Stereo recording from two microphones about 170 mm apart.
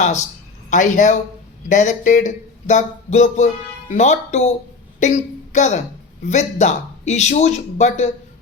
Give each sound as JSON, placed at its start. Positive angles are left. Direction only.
{"t": 0.0, "sound": "a woman's voice", "side_deg": 45}